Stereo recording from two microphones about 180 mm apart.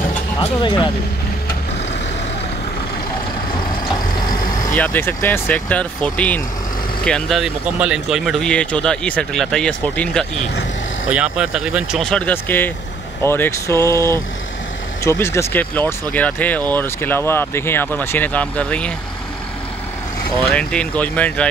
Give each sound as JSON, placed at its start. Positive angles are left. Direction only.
{"t": 0.4, "sound": "speech", "side_deg": 25}
{"t": 4.7, "sound": "speech", "side_deg": 10}
{"t": 11.1, "sound": "speech", "side_deg": -5}
{"t": 20.4, "sound": "speech", "side_deg": 5}